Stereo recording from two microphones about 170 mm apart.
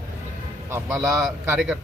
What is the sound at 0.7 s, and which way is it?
A man's voice, 10° right (ahead or behind).